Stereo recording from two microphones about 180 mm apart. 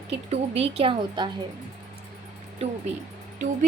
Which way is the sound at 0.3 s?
35° right (ahead or behind).